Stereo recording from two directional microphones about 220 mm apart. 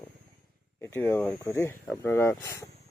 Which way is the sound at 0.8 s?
10° left (ahead or behind).